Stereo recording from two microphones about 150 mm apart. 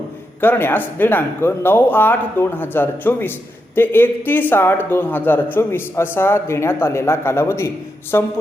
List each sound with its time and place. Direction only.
0.4 s a man's voice: 15° left (ahead or behind)